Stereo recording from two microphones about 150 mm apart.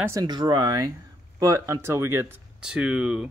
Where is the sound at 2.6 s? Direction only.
5° right (ahead or behind).